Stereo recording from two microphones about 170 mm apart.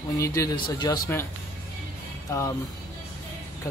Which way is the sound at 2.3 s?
15° left (ahead or behind).